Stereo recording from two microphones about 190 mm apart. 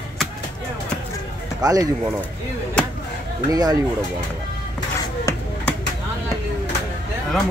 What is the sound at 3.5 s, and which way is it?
Speech, 20° right (ahead or behind).